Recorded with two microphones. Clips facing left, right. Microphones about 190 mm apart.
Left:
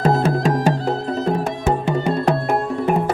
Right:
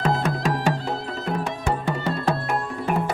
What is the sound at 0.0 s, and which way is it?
Music, 35° left (ahead or behind).